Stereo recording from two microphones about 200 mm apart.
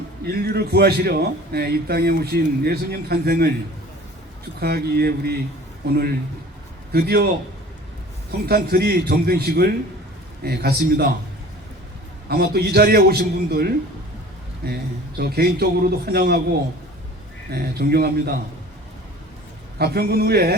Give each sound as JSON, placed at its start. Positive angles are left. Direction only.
{"t": 0.3, "sound": "a man's voice", "side_deg": -55}
{"t": 4.6, "sound": "a man's voice", "side_deg": -50}
{"t": 8.4, "sound": "a man's voice", "side_deg": -50}
{"t": 12.3, "sound": "a man's voice", "side_deg": -50}
{"t": 17.5, "sound": "a man's voice", "side_deg": -50}
{"t": 19.8, "sound": "a man's voice", "side_deg": -50}